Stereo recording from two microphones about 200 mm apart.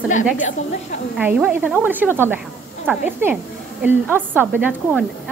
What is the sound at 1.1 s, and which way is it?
Speech, 5° right (ahead or behind).